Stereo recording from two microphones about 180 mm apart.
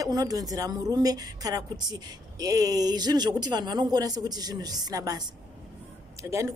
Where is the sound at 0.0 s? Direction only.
20° right (ahead or behind).